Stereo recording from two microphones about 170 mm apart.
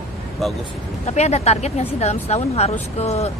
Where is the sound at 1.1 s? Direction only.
40° left (ahead or behind).